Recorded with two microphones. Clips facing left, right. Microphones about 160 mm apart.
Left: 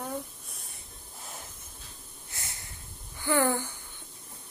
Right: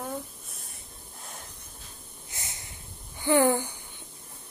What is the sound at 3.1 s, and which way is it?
Speech, 20° right (ahead or behind).